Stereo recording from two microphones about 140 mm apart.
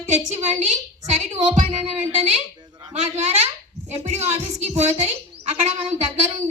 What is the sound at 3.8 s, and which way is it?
A woman's voice, 50° right (ahead or behind).